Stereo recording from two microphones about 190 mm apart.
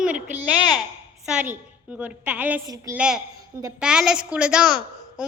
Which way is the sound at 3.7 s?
5° right (ahead or behind).